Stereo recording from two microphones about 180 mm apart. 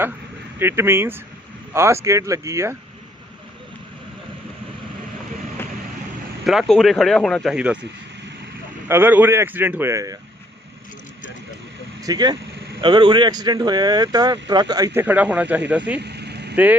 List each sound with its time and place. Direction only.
0.6 s a man's voice: 15° right (ahead or behind)
6.4 s speech: centre (ahead or behind)
8.9 s a man's voice: 10° right (ahead or behind)
12.0 s speech: 20° right (ahead or behind)
15.0 s a man's voice: 10° right (ahead or behind)
16.0 s vehicle: 65° right (ahead or behind)